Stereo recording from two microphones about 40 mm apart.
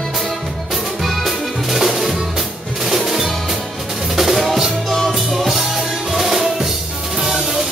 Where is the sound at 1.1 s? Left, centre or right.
Centre.